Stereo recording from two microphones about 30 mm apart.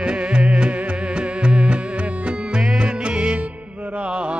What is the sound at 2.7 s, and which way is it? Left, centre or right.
Music, right.